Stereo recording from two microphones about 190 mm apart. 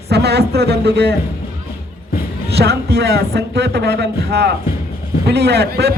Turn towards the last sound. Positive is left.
turn(degrees=-60)  # may be behind; listen again after turning